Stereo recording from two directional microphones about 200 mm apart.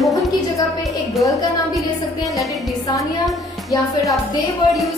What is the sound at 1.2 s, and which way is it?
Speech, 15° left (ahead or behind).